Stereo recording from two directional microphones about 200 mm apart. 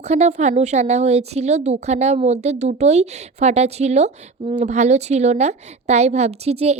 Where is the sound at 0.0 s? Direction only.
35° right (ahead or behind).